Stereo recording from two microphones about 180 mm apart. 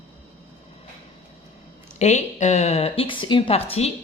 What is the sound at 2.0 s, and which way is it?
Speech, 40° left (ahead or behind).